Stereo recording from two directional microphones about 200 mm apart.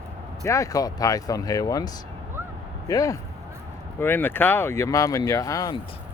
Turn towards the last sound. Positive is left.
turn(degrees=20)  # may be behind; listen again after turning